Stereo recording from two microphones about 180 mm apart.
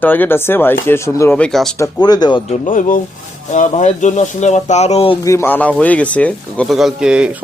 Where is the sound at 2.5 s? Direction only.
45° left (ahead or behind); by 5.2 s 30° left (ahead or behind).